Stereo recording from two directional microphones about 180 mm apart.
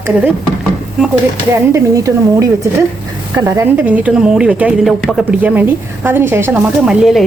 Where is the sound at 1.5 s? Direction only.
15° right (ahead or behind).